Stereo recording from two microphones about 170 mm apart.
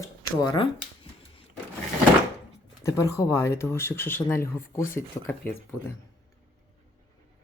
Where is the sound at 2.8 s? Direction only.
15° left (ahead or behind).